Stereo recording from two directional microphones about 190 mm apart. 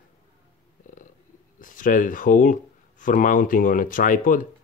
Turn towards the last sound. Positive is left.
turn(degrees=45)  # may be behind; listen again after turning